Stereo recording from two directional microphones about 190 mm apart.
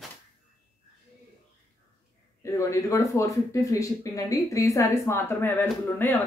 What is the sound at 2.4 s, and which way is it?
Speech, 15° left (ahead or behind).